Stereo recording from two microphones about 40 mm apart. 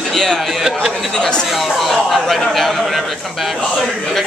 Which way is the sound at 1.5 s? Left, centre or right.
Centre.